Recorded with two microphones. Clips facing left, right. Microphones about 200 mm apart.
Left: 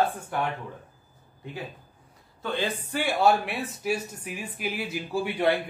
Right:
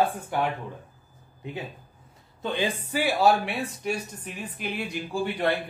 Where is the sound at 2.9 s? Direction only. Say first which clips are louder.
Right 1 dB; centre (ahead or behind).